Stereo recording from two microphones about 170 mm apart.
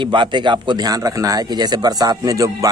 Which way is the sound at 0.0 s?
30° right (ahead or behind).